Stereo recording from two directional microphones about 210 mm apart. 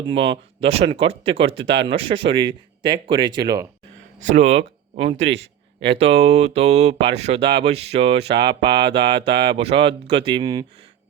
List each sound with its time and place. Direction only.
0.1 s speech: 25° right (ahead or behind)
4.2 s speech: 35° right (ahead or behind); by 10.7 s 20° right (ahead or behind)